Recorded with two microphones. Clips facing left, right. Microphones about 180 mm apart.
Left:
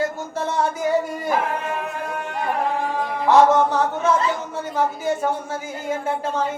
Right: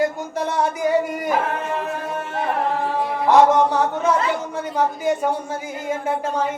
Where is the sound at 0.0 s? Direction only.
15° right (ahead or behind).